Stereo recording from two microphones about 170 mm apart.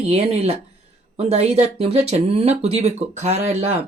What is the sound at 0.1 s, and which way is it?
Speech, 35° right (ahead or behind).